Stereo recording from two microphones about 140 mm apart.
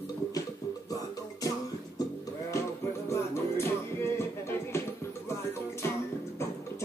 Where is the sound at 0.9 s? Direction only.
25° left (ahead or behind).